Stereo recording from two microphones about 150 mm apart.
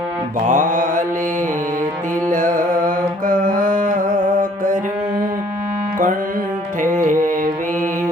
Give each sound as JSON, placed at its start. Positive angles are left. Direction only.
{"t": 0.3, "sound": "mantra", "side_deg": -55}
{"t": 2.3, "sound": "mantra", "side_deg": -60}
{"t": 6.8, "sound": "music", "side_deg": -60}